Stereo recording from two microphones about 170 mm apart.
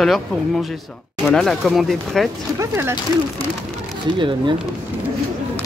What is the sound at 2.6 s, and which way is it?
Speech, 15° right (ahead or behind).